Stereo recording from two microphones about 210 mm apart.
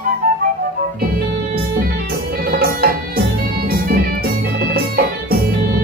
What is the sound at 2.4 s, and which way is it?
Music, 45° right (ahead or behind).